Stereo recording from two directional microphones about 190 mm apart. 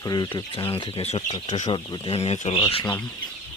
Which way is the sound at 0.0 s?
20° left (ahead or behind).